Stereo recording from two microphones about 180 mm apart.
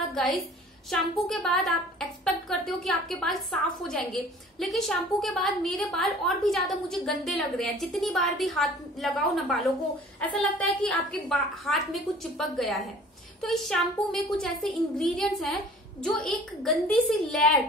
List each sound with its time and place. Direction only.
0.1 s a sound: centre (ahead or behind)
0.9 s a woman's voice: centre (ahead or behind)
10.6 s a woman's voice: 5° left (ahead or behind)